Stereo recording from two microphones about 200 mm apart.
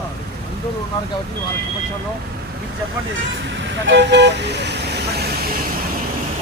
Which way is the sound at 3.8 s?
60° right (ahead or behind).